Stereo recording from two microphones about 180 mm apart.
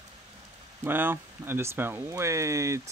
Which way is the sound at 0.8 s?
10° right (ahead or behind).